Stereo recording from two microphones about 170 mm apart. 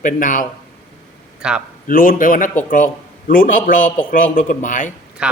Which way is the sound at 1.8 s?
55° left (ahead or behind).